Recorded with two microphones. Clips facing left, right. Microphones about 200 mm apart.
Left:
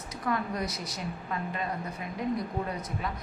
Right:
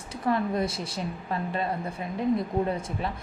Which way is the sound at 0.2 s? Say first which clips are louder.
Right 5 dB; 25° right (ahead or behind).